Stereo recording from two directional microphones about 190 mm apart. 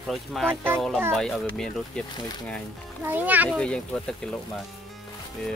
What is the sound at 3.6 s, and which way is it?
Speech, 5° left (ahead or behind).